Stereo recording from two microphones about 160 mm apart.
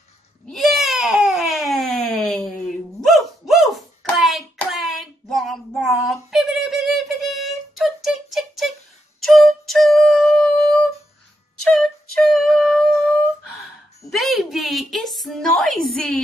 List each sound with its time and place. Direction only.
0.5 s baby cry: centre (ahead or behind)
3.0 s hands: centre (ahead or behind)
9.2 s music: centre (ahead or behind)
14.1 s a sound: centre (ahead or behind)